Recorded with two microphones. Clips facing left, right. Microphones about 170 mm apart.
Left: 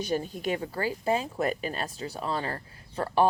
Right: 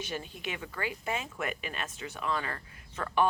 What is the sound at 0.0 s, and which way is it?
Speech, 40° left (ahead or behind).